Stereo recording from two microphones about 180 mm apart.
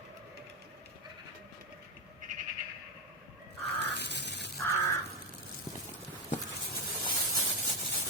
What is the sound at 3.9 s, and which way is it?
Crow, 70° left (ahead or behind).